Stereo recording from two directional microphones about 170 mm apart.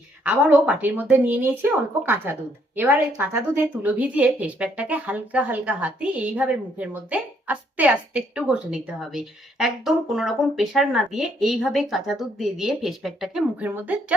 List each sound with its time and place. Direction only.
0.3 s speech: 10° right (ahead or behind)